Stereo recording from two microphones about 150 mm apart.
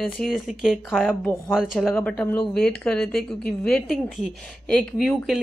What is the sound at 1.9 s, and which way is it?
Speech, 10° left (ahead or behind).